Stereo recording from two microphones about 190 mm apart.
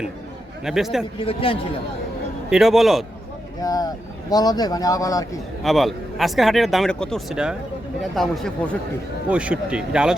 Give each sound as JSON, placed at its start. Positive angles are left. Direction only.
{"t": 0.6, "sound": "speech", "side_deg": 0}
{"t": 1.2, "sound": "speech", "side_deg": 30}
{"t": 2.5, "sound": "speech", "side_deg": 0}
{"t": 3.6, "sound": "speech", "side_deg": 20}
{"t": 5.6, "sound": "speech", "side_deg": 0}